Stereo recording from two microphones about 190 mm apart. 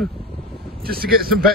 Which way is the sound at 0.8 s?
55° right (ahead or behind).